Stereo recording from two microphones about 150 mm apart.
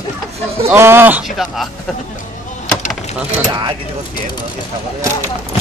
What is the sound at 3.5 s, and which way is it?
Speech, 30° right (ahead or behind).